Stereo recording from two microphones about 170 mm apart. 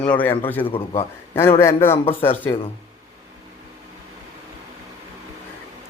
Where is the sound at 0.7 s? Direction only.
35° left (ahead or behind).